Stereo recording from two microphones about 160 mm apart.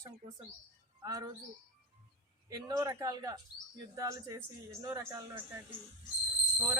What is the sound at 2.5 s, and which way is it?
Speech, 25° right (ahead or behind).